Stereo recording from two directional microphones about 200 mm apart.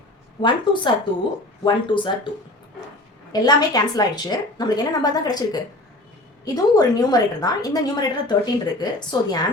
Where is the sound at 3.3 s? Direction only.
20° left (ahead or behind).